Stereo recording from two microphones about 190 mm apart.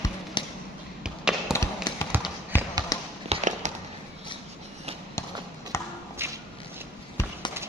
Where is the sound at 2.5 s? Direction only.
10° left (ahead or behind).